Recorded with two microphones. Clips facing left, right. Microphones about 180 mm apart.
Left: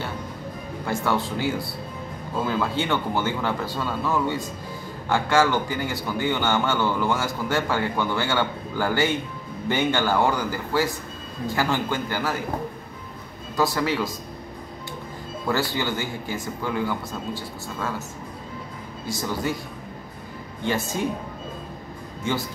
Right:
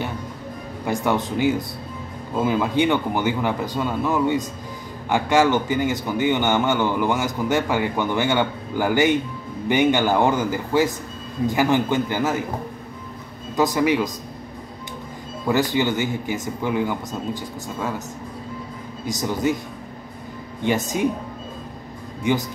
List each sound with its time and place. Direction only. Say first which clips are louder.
0.8 s a man's voice: right 3 dB; 20° right (ahead or behind)
13.6 s a man's voice: right 4 dB; 15° right (ahead or behind)
15.4 s a man's voice: right 5 dB; 20° right (ahead or behind)
19.0 s a man's voice: right 5 dB; 20° right (ahead or behind)
20.6 s a man's voice: right 4 dB; 15° right (ahead or behind)
22.2 s a man's voice: right 5 dB; 15° right (ahead or behind)